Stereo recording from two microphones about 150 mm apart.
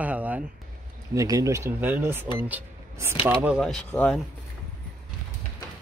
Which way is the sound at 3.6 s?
Centre (ahead or behind).